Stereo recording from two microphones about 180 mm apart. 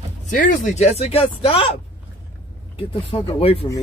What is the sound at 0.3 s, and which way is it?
Speech, 45° left (ahead or behind).